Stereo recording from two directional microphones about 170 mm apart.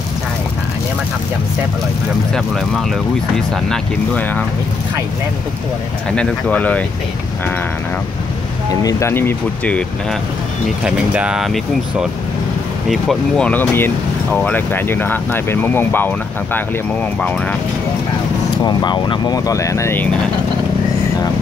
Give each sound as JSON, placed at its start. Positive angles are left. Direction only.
{"t": 2.3, "sound": "speech", "side_deg": 0}
{"t": 6.1, "sound": "speech", "side_deg": 5}
{"t": 8.8, "sound": "speech", "side_deg": 15}
{"t": 10.8, "sound": "speech", "side_deg": -5}
{"t": 17.2, "sound": "speech", "side_deg": 5}
{"t": 18.6, "sound": "speech", "side_deg": 25}